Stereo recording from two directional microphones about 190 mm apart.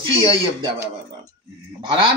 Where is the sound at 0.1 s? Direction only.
25° right (ahead or behind).